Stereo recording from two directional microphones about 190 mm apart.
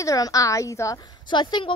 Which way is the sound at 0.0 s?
15° left (ahead or behind).